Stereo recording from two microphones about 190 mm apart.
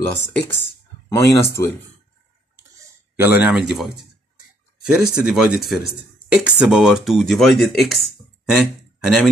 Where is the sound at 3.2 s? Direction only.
10° right (ahead or behind).